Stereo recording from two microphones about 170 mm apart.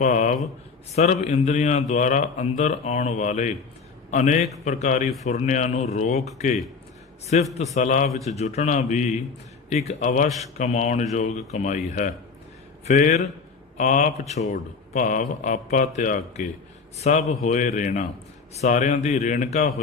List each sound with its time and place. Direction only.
0.0 s a man's voice: 45° left (ahead or behind)